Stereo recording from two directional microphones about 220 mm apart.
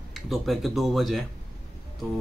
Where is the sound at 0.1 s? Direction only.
Centre (ahead or behind).